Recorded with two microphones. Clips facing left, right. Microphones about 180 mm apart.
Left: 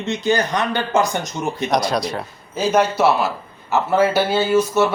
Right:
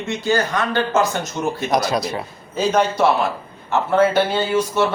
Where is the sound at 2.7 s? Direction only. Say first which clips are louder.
Left 1 dB; 5° left (ahead or behind).